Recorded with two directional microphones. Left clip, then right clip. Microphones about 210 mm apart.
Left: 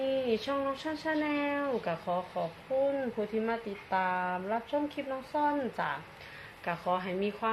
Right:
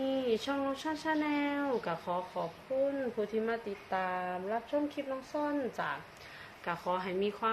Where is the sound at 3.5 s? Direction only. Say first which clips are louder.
Left 2 dB; centre (ahead or behind).